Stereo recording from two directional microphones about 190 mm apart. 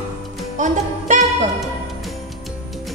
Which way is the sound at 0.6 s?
40° right (ahead or behind).